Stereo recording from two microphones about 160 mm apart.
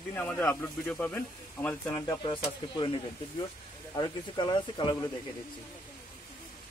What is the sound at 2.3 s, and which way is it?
Speech, 30° left (ahead or behind).